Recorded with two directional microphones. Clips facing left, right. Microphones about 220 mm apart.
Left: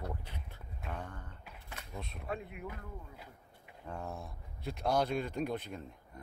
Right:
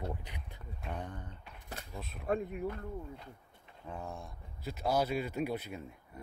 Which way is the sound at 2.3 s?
40° right (ahead or behind).